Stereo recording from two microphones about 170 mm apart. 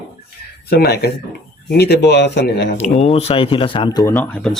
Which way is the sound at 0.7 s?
70° left (ahead or behind).